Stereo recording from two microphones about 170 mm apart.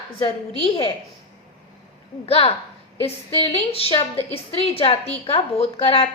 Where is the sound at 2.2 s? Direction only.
35° left (ahead or behind).